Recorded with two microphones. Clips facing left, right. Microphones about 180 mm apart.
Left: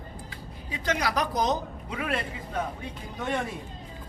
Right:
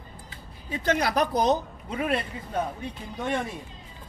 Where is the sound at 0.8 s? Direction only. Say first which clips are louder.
Right 3 dB; 55° right (ahead or behind).